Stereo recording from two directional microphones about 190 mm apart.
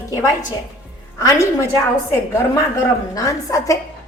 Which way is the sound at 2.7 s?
15° left (ahead or behind).